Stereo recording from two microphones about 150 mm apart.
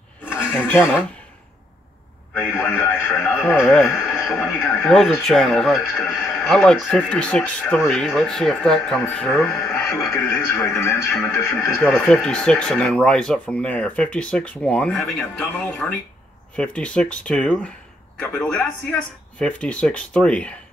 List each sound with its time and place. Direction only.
0.3 s speech: 10° left (ahead or behind)
2.5 s speech: 15° left (ahead or behind)
4.1 s a sound: 15° left (ahead or behind)
4.6 s speech: 10° left (ahead or behind)
9.6 s speech: 20° left (ahead or behind)